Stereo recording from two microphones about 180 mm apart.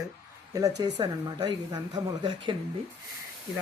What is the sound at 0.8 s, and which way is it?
Speech, 25° right (ahead or behind).